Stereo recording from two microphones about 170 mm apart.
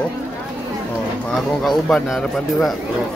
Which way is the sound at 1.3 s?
Centre (ahead or behind).